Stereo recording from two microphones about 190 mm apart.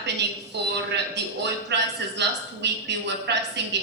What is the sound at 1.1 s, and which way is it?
A woman's voice, 65° right (ahead or behind).